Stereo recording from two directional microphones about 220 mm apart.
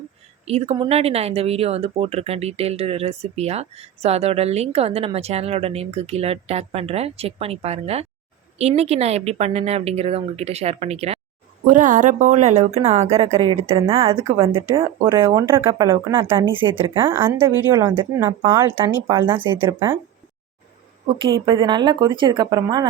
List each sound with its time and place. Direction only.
0.4 s a woman's voice: 30° right (ahead or behind)
13.2 s speech: 15° right (ahead or behind)
15.4 s speech: 10° right (ahead or behind)
16.3 s speech: 25° right (ahead or behind)
17.1 s speech: 10° right (ahead or behind)
21.2 s speech: 20° right (ahead or behind)